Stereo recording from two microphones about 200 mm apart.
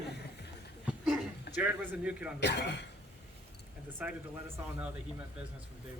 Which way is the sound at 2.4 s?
60° left (ahead or behind).